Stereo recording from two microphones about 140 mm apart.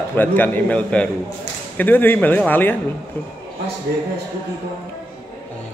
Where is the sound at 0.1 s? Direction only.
15° left (ahead or behind).